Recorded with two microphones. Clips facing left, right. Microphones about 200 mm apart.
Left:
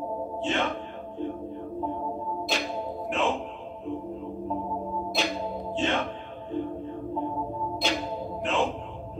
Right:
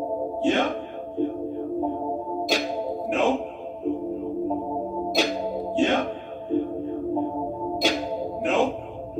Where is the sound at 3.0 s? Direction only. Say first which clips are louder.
Right 5 dB; 40° right (ahead or behind).